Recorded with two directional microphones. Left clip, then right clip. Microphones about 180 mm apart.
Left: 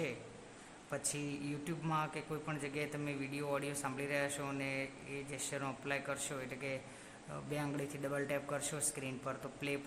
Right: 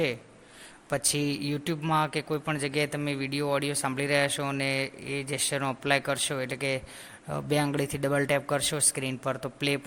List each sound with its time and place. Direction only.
0.9 s speech: 35° right (ahead or behind)